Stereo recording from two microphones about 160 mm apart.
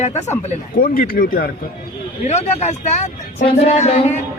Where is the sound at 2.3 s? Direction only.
45° left (ahead or behind).